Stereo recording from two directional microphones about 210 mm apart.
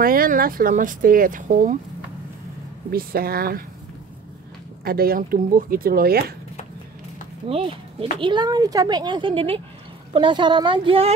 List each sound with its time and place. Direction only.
0.0 s speech: 45° right (ahead or behind)
2.9 s speech: 45° right (ahead or behind)
4.8 s speech: 45° right (ahead or behind)
7.4 s speech: 25° right (ahead or behind)